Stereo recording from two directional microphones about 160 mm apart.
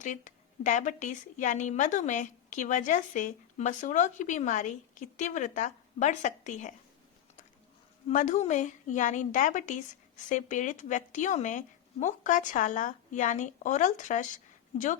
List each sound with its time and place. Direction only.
0.0 s a woman's voice: 50° left (ahead or behind)
8.1 s a woman's voice: 50° left (ahead or behind)